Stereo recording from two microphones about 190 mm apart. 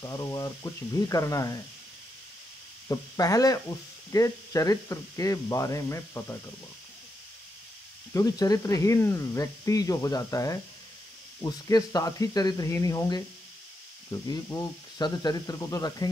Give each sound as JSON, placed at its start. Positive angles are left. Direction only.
{"t": 0.0, "sound": "speech", "side_deg": 20}
{"t": 2.9, "sound": "speech", "side_deg": 20}
{"t": 8.1, "sound": "speech", "side_deg": 20}